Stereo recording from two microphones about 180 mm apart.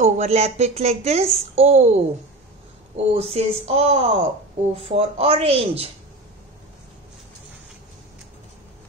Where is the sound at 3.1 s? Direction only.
35° right (ahead or behind).